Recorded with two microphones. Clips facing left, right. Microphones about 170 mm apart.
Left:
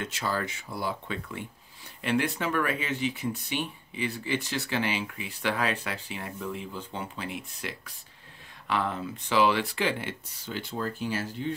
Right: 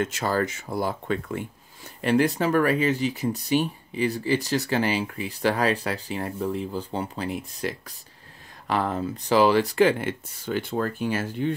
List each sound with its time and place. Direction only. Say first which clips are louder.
0.0 s speech: right 7 dB; 45° right (ahead or behind)